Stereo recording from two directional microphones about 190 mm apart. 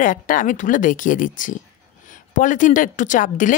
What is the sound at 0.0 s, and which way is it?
Speech, 45° left (ahead or behind).